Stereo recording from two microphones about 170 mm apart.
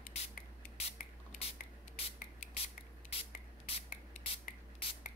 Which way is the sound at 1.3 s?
35° left (ahead or behind).